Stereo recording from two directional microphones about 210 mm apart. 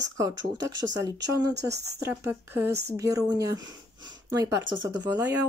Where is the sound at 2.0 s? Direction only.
10° right (ahead or behind).